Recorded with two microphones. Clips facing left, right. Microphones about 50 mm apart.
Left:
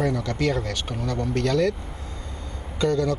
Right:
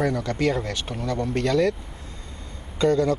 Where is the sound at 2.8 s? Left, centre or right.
Right.